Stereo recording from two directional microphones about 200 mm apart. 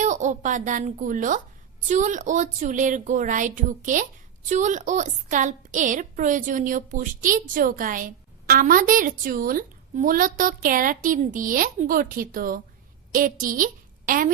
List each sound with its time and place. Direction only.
0.0 s a woman's voice: 35° right (ahead or behind)